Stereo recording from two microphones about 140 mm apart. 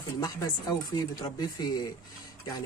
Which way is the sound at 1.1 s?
30° left (ahead or behind).